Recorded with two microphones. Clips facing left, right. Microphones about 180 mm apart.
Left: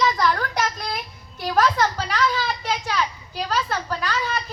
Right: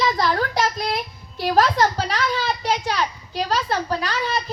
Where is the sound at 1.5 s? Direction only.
30° right (ahead or behind).